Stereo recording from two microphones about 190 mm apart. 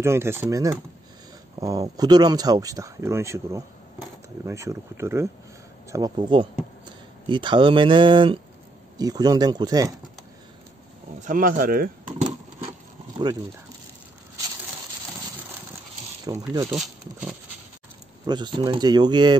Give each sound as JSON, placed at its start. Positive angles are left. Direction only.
{"t": 0.0, "sound": "speech", "side_deg": -15}
{"t": 11.1, "sound": "speech", "side_deg": -45}
{"t": 12.0, "sound": "keys jangling", "side_deg": -40}
{"t": 16.3, "sound": "speech", "side_deg": -20}
{"t": 16.7, "sound": "speech", "side_deg": -5}
{"t": 18.2, "sound": "speech", "side_deg": -25}